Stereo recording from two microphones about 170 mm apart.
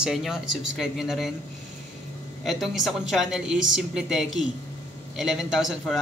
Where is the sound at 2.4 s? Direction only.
Centre (ahead or behind).